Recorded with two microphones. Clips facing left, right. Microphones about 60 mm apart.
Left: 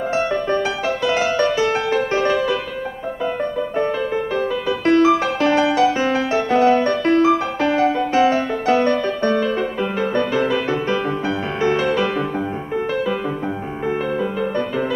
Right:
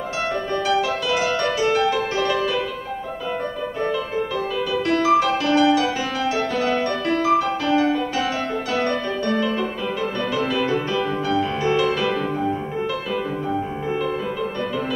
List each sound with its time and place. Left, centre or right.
0.7 s music: left
4.8 s music: left